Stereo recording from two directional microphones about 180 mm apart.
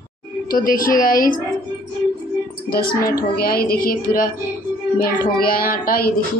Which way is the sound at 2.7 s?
50° left (ahead or behind).